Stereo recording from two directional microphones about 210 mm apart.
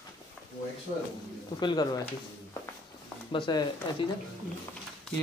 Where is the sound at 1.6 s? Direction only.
20° left (ahead or behind).